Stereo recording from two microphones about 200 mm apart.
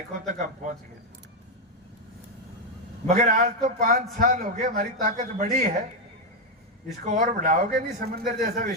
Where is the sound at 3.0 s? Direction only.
40° right (ahead or behind).